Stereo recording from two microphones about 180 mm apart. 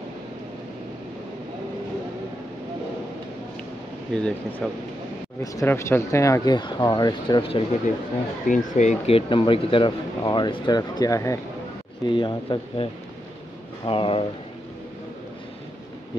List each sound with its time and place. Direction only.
4.1 s speech: 5° left (ahead or behind); by 7.6 s 30° left (ahead or behind)
8.5 s speech: 40° left (ahead or behind)